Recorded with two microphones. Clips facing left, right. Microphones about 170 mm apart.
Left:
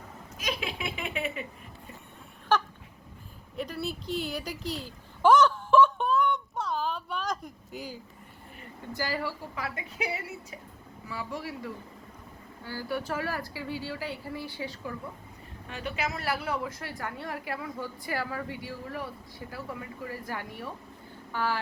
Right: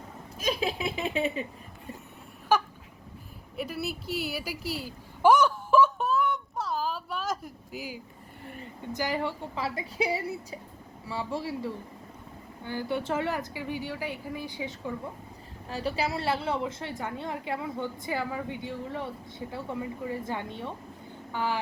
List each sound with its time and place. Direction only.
0.4 s speech: 35° right (ahead or behind)
2.5 s a sound: 10° right (ahead or behind)
8.9 s a woman's voice: 20° right (ahead or behind)
15.7 s a woman's voice: 35° right (ahead or behind); by 21.6 s 20° right (ahead or behind)